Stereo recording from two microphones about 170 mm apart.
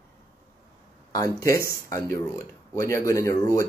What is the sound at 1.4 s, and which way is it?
Speech, 20° left (ahead or behind).